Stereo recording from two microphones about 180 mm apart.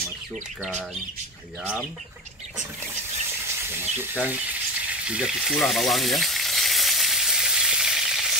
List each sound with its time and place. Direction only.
3.6 s speech: 10° right (ahead or behind)
5.0 s frying: 5° right (ahead or behind)